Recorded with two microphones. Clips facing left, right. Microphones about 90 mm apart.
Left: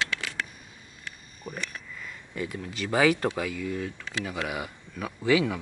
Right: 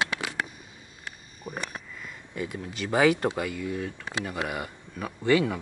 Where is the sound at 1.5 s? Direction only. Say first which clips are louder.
Right 1 dB; 10° right (ahead or behind).